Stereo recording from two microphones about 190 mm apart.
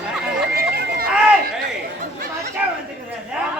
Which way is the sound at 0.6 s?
50° right (ahead or behind).